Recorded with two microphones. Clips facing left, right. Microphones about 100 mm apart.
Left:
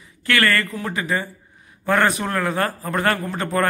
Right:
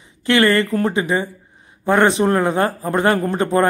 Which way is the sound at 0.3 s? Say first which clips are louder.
Right 5 dB; 20° right (ahead or behind).